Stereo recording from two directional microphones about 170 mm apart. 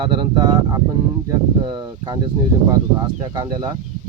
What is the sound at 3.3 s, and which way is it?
Speech, 25° right (ahead or behind).